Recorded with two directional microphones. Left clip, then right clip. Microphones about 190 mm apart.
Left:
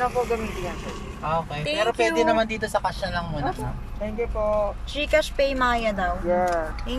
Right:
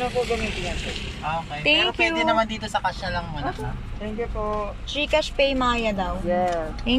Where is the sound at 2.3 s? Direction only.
20° left (ahead or behind).